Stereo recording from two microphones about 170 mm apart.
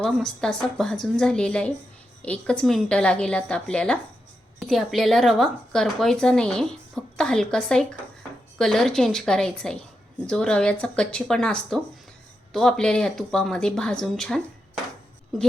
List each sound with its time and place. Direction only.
0.0 s a woman's voice: 5° left (ahead or behind)